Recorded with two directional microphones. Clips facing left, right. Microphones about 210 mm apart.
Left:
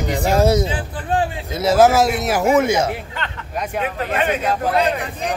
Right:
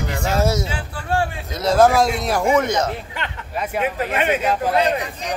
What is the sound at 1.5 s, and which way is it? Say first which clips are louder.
A man's voice: left 1 dB; 5° left (ahead or behind).